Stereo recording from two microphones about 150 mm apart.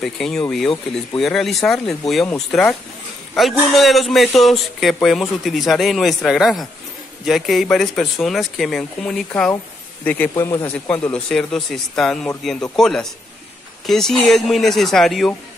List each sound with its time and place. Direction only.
0.0 s speech: centre (ahead or behind)
10.3 s speech: 25° left (ahead or behind)
10.7 s speech: 10° left (ahead or behind)